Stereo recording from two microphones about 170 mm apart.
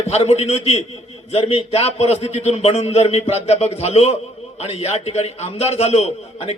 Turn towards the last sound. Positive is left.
turn(degrees=40)  # may be behind; listen again after turning